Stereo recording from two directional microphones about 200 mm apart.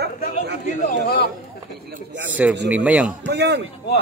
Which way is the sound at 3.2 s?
55° right (ahead or behind).